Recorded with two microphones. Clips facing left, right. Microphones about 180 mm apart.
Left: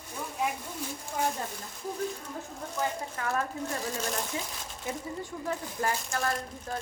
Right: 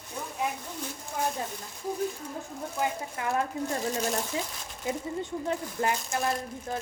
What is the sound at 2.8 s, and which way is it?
Speech, 15° right (ahead or behind).